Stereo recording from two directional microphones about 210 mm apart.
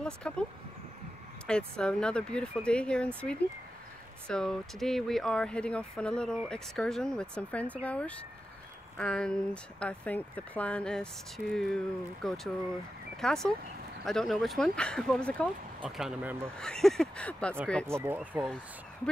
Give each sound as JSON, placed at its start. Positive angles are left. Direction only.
{"t": 0.0, "sound": "speech", "side_deg": 5}
{"t": 1.8, "sound": "speech", "side_deg": 5}
{"t": 4.3, "sound": "speech", "side_deg": 5}
{"t": 16.5, "sound": "speech", "side_deg": 5}
{"t": 17.8, "sound": "speech", "side_deg": -10}